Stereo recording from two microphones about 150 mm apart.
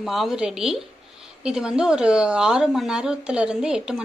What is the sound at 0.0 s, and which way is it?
Speech, centre (ahead or behind).